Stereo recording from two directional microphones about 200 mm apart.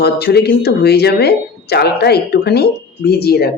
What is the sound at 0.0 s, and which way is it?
Speech, 55° left (ahead or behind).